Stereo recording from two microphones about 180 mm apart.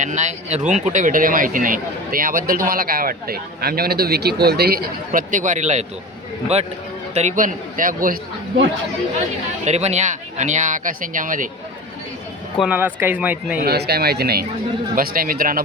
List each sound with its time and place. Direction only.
0.0 s a man's voice: 40° right (ahead or behind)
7.1 s speech: 40° right (ahead or behind)
9.6 s speech: 40° right (ahead or behind)
12.5 s speech: 10° right (ahead or behind)
13.6 s a man's voice: 60° right (ahead or behind)